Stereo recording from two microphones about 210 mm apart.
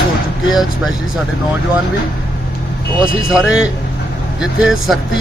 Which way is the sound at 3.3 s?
5° right (ahead or behind).